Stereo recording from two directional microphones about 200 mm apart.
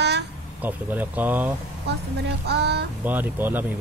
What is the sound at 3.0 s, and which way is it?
Speech, 10° right (ahead or behind).